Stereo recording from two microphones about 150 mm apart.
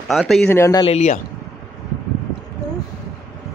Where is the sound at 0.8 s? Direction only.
50° left (ahead or behind).